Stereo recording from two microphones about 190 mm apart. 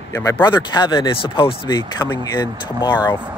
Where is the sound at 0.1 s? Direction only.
20° left (ahead or behind).